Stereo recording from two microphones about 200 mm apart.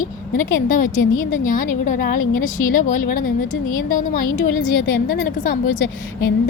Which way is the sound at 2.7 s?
40° left (ahead or behind).